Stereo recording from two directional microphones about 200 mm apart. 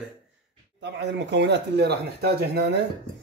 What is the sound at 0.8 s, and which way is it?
Speech, 60° right (ahead or behind).